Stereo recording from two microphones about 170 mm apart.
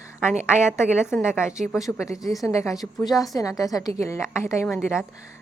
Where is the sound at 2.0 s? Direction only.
20° left (ahead or behind).